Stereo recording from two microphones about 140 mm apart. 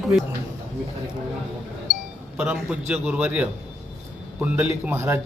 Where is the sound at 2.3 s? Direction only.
10° right (ahead or behind).